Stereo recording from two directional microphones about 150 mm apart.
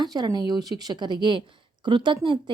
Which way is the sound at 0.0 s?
25° right (ahead or behind).